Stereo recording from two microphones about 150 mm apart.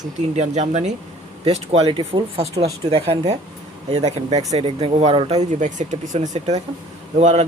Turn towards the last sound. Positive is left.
turn(degrees=-50)  # may be behind; listen again after turning